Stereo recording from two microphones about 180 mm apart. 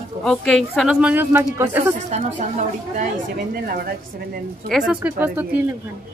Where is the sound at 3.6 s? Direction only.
50° right (ahead or behind).